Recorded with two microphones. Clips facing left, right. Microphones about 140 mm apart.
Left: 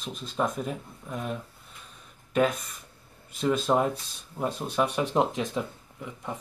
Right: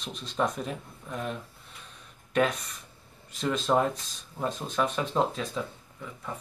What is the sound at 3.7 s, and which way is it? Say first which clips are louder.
Speech: left 1 dB; 15° left (ahead or behind).